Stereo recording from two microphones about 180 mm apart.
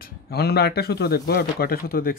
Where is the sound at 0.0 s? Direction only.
60° left (ahead or behind).